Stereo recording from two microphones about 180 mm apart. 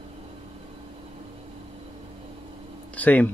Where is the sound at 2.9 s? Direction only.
10° left (ahead or behind).